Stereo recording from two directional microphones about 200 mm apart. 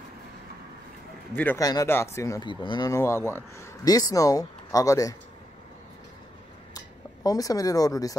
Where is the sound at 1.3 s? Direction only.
10° left (ahead or behind).